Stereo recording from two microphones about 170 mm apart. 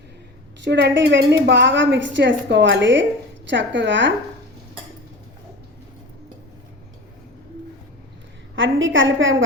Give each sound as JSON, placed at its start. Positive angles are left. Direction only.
{"t": 0.6, "sound": "a woman's voice", "side_deg": -90}
{"t": 8.5, "sound": "a woman's voice", "side_deg": -90}